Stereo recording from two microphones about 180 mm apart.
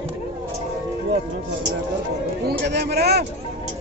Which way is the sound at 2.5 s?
65° right (ahead or behind).